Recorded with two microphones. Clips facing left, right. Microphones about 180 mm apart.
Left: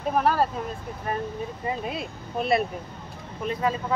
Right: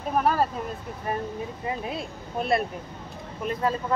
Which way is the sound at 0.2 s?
Centre (ahead or behind).